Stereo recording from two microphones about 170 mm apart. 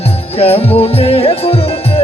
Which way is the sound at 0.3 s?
35° left (ahead or behind).